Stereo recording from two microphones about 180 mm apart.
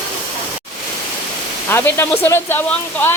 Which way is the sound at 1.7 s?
15° left (ahead or behind).